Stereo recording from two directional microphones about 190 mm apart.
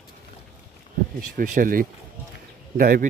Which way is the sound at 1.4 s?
45° right (ahead or behind).